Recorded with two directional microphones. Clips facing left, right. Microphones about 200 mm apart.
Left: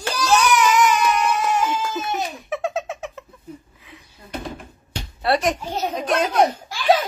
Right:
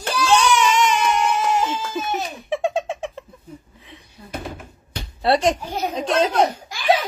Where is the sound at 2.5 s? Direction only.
30° right (ahead or behind).